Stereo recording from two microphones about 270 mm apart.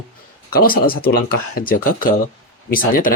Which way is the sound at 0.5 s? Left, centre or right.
Left.